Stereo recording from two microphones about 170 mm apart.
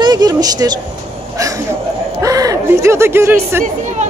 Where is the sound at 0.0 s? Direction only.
25° right (ahead or behind).